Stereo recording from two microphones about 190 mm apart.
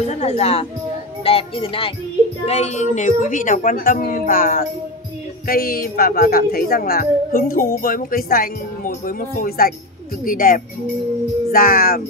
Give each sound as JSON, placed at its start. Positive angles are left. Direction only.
{"t": 0.1, "sound": "a woman's voice", "side_deg": 35}